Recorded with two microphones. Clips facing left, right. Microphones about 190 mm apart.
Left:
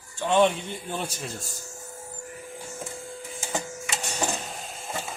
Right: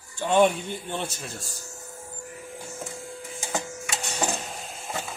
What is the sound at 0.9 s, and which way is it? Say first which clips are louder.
Speech: left 1 dB; 5° left (ahead or behind).